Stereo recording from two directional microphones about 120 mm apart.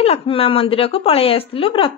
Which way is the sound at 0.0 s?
55° left (ahead or behind).